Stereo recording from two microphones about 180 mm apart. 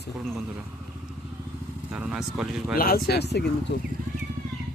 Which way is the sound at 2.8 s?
55° left (ahead or behind).